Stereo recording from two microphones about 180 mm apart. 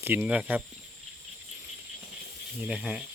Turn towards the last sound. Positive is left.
turn(degrees=-5)  # may be behind; listen again after turning